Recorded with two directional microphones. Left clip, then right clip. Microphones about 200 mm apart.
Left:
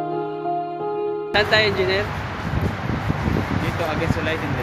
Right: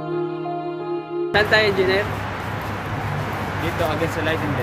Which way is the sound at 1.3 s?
5° left (ahead or behind).